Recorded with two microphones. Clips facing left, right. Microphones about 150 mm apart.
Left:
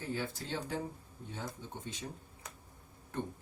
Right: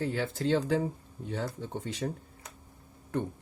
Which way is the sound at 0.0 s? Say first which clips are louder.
Right 8 dB; 80° right.